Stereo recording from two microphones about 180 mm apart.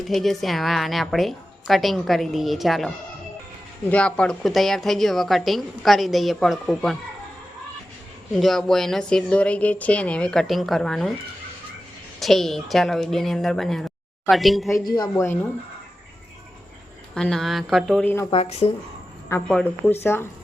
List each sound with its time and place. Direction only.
0.0 s a woman's voice: centre (ahead or behind)
8.4 s a woman's voice: centre (ahead or behind)
12.2 s a woman's voice: centre (ahead or behind)
14.8 s speech: 20° left (ahead or behind)
17.2 s a woman's voice: 5° left (ahead or behind)
18.3 s speech: 35° left (ahead or behind)
19.5 s speech: 5° left (ahead or behind)